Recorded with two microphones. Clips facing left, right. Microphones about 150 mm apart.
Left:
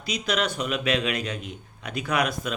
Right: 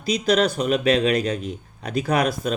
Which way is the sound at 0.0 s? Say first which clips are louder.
Right 7 dB; 35° right (ahead or behind).